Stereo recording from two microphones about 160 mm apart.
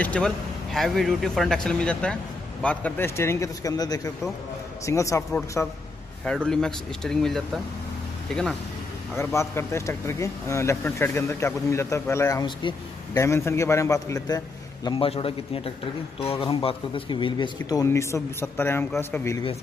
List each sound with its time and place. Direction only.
0.0 s speech: 5° left (ahead or behind)
6.2 s speech: 5° left (ahead or behind)
9.2 s speech: 15° left (ahead or behind)
14.9 s a man's voice: 35° left (ahead or behind); by 19.4 s 15° left (ahead or behind)